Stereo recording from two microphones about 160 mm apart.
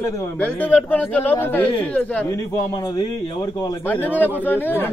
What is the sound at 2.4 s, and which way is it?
A man's voice, 20° left (ahead or behind).